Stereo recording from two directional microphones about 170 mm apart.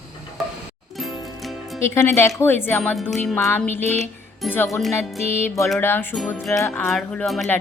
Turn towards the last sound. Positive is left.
turn(degrees=0)  # may be behind; listen again after turning